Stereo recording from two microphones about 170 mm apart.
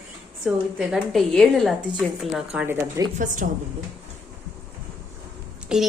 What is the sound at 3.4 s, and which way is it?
Speech, 55° right (ahead or behind).